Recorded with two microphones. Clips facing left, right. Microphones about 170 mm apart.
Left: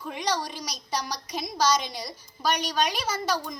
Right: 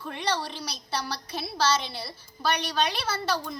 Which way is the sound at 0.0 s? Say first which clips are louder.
Left 1 dB; 10° left (ahead or behind).